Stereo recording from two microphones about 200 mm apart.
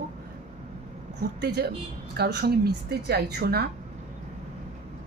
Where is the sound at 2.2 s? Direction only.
55° right (ahead or behind).